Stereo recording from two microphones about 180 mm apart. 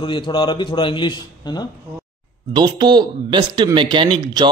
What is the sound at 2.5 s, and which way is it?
Speech, 25° right (ahead or behind).